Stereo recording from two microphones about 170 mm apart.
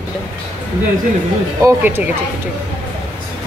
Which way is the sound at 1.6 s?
15° right (ahead or behind).